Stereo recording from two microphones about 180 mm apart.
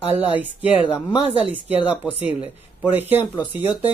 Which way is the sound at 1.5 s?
35° right (ahead or behind).